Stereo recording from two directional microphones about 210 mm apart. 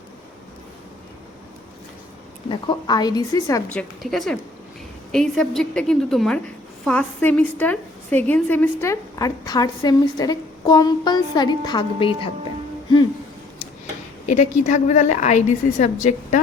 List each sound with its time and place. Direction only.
2.5 s a woman's voice: 20° left (ahead or behind)
3.7 s a woman's voice: 5° left (ahead or behind); by 12.3 s 25° left (ahead or behind)
14.3 s a woman's voice: 35° left (ahead or behind)